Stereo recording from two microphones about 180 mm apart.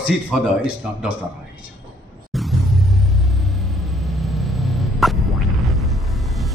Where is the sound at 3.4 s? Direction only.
Centre (ahead or behind).